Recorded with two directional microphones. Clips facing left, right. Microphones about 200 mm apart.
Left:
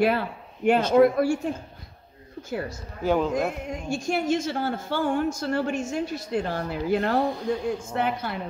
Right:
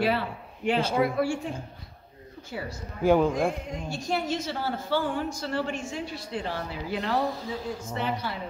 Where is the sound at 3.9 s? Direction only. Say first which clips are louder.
Left 5 dB; 50° left (ahead or behind).